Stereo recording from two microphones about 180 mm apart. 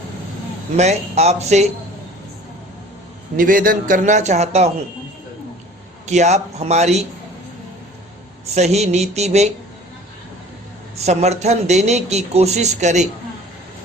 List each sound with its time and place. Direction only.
0.8 s a man's voice: 40° right (ahead or behind)
3.3 s a man's voice: 50° right (ahead or behind)
6.1 s a man's voice: 40° right (ahead or behind)
8.5 s a man's voice: 35° right (ahead or behind)
10.9 s a man's voice: 40° right (ahead or behind)